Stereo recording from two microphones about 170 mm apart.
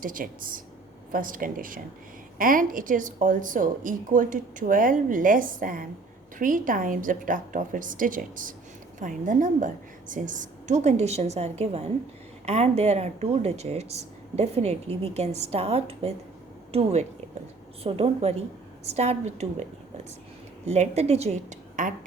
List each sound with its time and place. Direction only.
0.0 s a woman's voice: 55° right (ahead or behind)
20.7 s speech: 40° right (ahead or behind)